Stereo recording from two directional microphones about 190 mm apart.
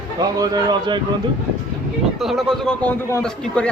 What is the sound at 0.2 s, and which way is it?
Speech, 20° right (ahead or behind).